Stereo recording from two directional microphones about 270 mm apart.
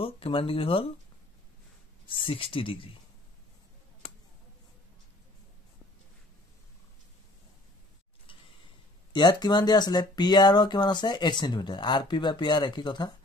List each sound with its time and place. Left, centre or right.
0.0 s speech: left
2.0 s speech: centre
9.1 s speech: centre